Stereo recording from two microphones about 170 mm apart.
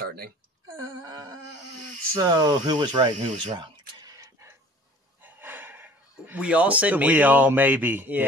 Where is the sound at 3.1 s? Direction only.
45° right (ahead or behind).